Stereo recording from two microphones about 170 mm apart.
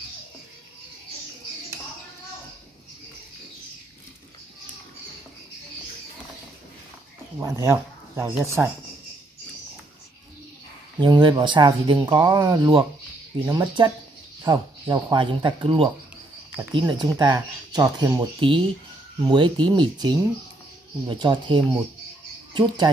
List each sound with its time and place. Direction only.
7.3 s speech: 15° right (ahead or behind)
11.0 s speech: 25° right (ahead or behind)